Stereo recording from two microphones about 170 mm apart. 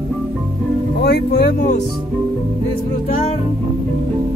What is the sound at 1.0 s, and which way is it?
Speech, 70° left (ahead or behind).